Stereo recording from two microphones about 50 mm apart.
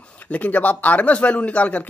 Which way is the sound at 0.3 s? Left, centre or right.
Left.